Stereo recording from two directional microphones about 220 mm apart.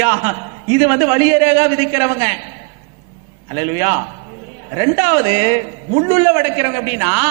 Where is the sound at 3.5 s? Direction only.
15° right (ahead or behind).